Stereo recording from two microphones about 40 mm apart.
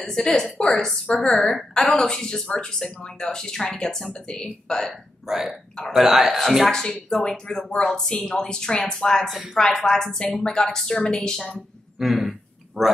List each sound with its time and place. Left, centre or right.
0.0 s speech: centre
3.6 s speech: left
5.2 s speech: centre
6.7 s speech: centre
12.0 s throat clearing: centre